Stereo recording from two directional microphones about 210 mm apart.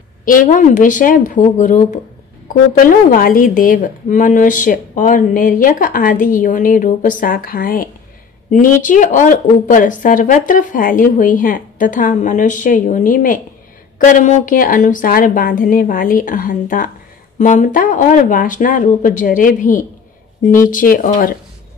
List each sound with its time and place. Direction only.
0.2 s a woman's voice: 40° left (ahead or behind)